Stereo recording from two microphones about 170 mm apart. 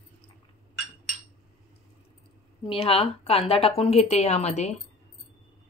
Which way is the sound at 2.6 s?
30° left (ahead or behind).